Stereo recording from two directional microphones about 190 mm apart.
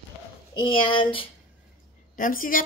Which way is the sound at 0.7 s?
25° left (ahead or behind).